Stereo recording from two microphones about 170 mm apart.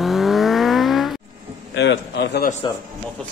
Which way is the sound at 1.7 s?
85° left.